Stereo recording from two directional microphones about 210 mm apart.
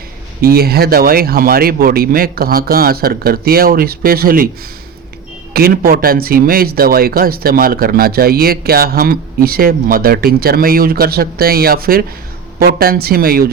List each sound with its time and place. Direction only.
0.4 s speech: 45° right (ahead or behind)
5.5 s speech: 45° right (ahead or behind)